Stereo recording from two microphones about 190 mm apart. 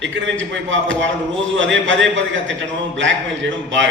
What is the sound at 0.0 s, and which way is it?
A man's voice, 70° right (ahead or behind).